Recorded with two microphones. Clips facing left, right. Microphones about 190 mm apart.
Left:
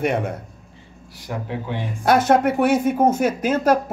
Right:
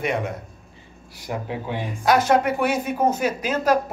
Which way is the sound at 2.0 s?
55° left (ahead or behind).